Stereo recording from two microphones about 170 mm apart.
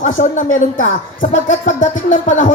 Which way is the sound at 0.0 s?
45° left (ahead or behind).